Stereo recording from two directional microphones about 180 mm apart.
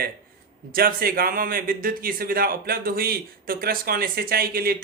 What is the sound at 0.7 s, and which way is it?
A man's voice, 55° right (ahead or behind).